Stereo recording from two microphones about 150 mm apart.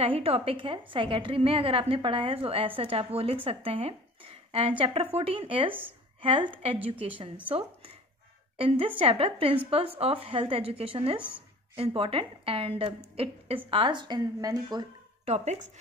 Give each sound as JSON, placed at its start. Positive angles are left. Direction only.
{"t": 0.0, "sound": "a woman's voice", "side_deg": -40}
{"t": 15.2, "sound": "speech", "side_deg": -45}